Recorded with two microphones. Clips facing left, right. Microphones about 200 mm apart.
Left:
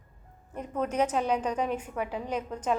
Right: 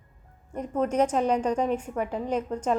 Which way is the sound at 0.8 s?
5° left (ahead or behind).